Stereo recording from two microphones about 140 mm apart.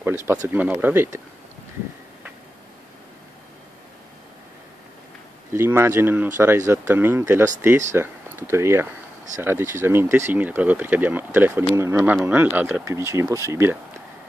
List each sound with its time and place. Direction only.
0.5 s speech: 10° right (ahead or behind)
5.5 s speech: 15° right (ahead or behind)